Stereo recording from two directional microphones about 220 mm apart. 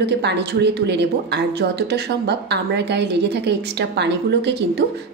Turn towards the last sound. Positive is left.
turn(degrees=-50)  # may be behind; listen again after turning